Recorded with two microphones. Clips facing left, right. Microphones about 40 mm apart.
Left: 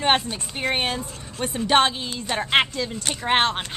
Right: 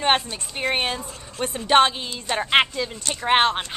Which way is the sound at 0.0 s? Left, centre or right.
Centre.